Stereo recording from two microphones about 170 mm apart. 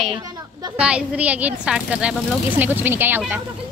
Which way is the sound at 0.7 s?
5° right (ahead or behind).